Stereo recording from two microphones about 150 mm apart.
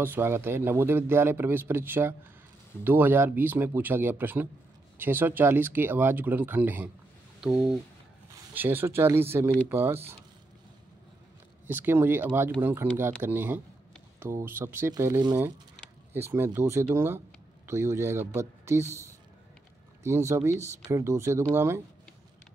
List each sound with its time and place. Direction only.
0.0 s speech: 15° right (ahead or behind)
8.5 s speech: 15° right (ahead or behind)
11.6 s speech: 15° right (ahead or behind)